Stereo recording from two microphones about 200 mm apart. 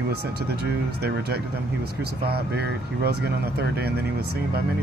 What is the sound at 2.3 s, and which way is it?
Speech, 55° right (ahead or behind).